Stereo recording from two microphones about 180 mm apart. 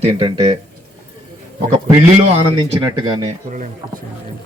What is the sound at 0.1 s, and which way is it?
Speech, 30° right (ahead or behind).